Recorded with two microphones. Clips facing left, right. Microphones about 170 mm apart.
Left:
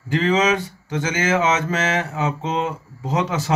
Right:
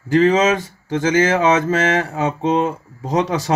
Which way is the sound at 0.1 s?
45° right (ahead or behind).